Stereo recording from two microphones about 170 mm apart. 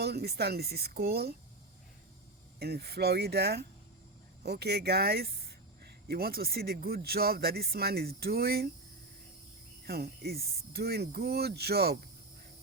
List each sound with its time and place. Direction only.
0.0 s speech: 70° right (ahead or behind)
2.6 s speech: 70° right (ahead or behind)
9.8 s speech: 65° right (ahead or behind)